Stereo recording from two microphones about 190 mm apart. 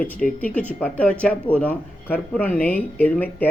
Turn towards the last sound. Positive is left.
turn(degrees=10)  # may be behind; listen again after turning